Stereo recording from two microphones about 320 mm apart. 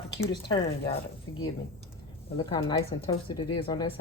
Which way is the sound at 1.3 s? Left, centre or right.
Left.